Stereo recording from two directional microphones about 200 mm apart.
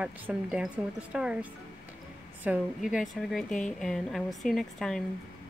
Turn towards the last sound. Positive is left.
turn(degrees=0)  # may be behind; listen again after turning